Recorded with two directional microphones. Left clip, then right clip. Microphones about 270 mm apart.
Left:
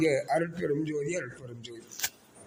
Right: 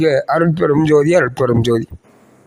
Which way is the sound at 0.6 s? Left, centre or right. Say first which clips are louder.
Right 18 dB; right.